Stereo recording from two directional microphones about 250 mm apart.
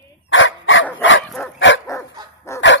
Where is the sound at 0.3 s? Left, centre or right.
Left.